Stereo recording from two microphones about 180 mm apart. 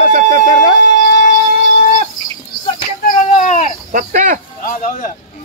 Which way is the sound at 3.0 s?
45° left (ahead or behind).